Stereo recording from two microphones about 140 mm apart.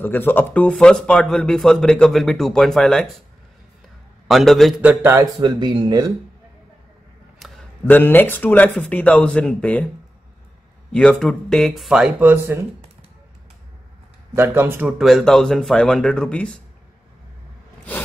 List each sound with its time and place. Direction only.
0.0 s speech: 15° left (ahead or behind)
4.3 s speech: centre (ahead or behind)
4.8 s a man's voice: 20° right (ahead or behind)
5.4 s speech: 30° right (ahead or behind)
7.4 s a sound: centre (ahead or behind)
7.8 s speech: 15° left (ahead or behind)
10.9 s speech: 5° left (ahead or behind); by 12.5 s 10° right (ahead or behind)
14.3 s speech: 15° right (ahead or behind)
15.0 s speech: centre (ahead or behind)